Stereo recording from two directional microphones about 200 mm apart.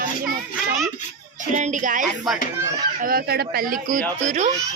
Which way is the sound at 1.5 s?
40° right (ahead or behind).